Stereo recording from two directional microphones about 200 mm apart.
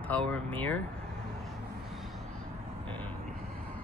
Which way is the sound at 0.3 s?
10° left (ahead or behind).